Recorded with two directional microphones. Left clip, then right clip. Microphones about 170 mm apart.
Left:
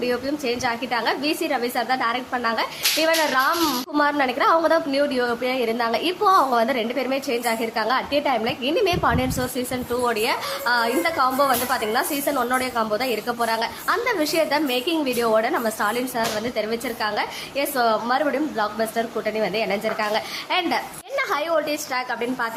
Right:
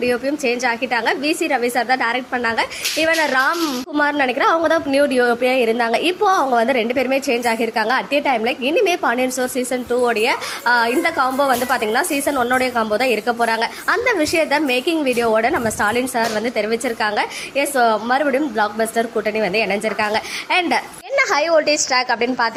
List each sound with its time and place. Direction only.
0.0 s a woman's voice: 20° right (ahead or behind)